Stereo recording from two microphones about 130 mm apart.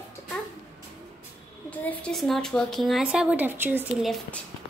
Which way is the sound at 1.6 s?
10° left (ahead or behind).